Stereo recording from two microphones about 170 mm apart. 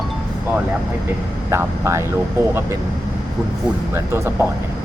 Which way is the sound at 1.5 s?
15° right (ahead or behind).